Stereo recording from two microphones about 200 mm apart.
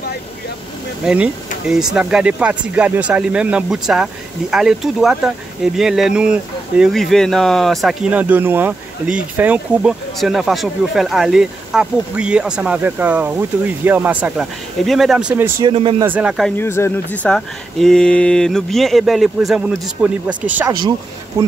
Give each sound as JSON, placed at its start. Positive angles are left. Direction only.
{"t": 1.0, "sound": "speech", "side_deg": -5}
{"t": 15.6, "sound": "speech", "side_deg": -25}
{"t": 16.0, "sound": "speech", "side_deg": -5}
{"t": 16.5, "sound": "speech", "side_deg": 15}
{"t": 20.5, "sound": "speech", "side_deg": -20}